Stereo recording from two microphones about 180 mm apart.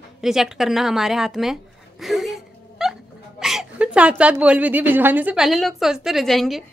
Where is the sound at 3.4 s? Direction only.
Centre (ahead or behind).